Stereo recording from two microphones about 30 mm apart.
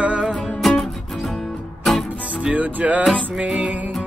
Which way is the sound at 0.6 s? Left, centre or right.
Centre.